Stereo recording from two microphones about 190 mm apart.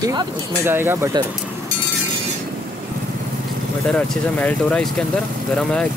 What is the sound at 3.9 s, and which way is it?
Speech, 5° left (ahead or behind).